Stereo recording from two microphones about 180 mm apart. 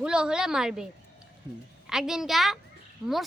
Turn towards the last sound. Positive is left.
turn(degrees=-5)  # may be behind; listen again after turning